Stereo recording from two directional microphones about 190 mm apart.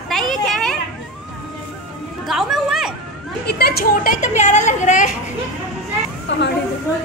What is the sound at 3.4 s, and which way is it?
A woman's voice, 55° left (ahead or behind).